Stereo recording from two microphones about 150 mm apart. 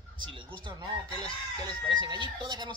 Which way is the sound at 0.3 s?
35° right (ahead or behind).